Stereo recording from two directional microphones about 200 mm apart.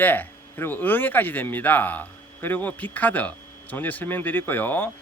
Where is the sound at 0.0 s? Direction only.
10° left (ahead or behind).